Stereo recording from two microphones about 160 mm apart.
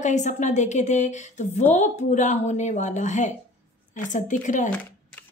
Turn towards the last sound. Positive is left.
turn(degrees=50)  # may be behind; listen again after turning